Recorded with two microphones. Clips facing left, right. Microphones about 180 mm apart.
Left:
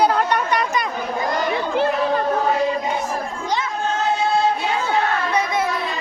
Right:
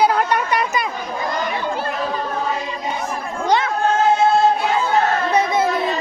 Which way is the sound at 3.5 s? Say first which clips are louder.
Right 6 dB; 60° right (ahead or behind).